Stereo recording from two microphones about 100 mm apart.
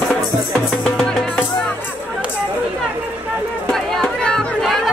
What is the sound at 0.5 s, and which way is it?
Music, 10° left (ahead or behind).